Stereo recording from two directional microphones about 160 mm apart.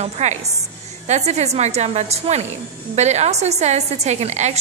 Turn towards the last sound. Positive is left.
turn(degrees=-45)  # may be behind; listen again after turning